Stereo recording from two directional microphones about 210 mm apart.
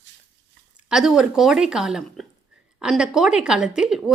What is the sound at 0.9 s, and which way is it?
Speech, centre (ahead or behind).